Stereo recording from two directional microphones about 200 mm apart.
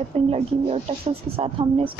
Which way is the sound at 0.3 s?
30° right (ahead or behind).